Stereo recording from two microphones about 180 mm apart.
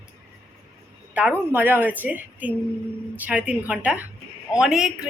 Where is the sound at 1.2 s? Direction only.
10° right (ahead or behind).